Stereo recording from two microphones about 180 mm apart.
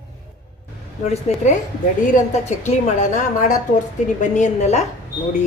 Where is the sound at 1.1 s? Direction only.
40° left (ahead or behind).